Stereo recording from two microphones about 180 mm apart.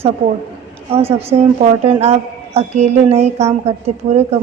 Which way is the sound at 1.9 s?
35° right (ahead or behind).